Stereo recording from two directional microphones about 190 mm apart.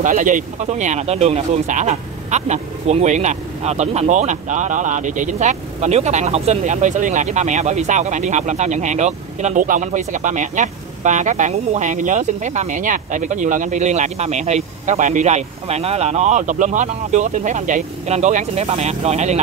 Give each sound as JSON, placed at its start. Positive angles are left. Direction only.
{"t": 0.0, "sound": "speech", "side_deg": -45}